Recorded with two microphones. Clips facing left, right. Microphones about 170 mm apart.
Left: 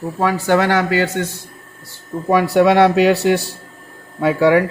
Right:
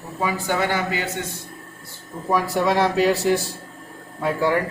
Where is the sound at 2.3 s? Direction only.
70° left (ahead or behind).